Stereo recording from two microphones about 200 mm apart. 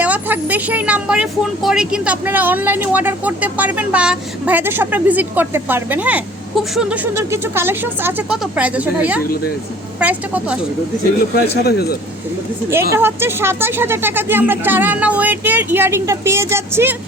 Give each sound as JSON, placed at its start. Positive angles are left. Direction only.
{"t": 0.0, "sound": "speech", "side_deg": -10}
{"t": 11.6, "sound": "a man's voice", "side_deg": 50}
{"t": 12.7, "sound": "speech", "side_deg": -10}